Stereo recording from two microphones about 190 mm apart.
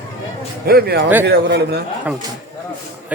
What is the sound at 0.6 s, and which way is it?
A man's voice, 55° right (ahead or behind).